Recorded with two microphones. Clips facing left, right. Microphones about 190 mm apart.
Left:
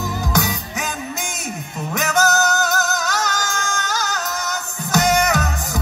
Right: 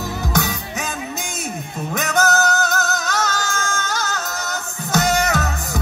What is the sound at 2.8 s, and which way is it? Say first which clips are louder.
Music: even; 20° left (ahead or behind).